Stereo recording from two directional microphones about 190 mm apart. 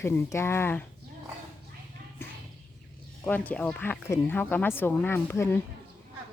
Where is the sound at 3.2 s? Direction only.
10° left (ahead or behind).